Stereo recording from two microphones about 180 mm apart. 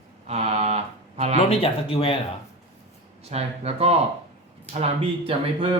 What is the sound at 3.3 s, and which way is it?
Speech, 35° right (ahead or behind).